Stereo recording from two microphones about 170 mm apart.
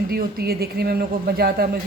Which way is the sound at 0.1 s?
60° right (ahead or behind).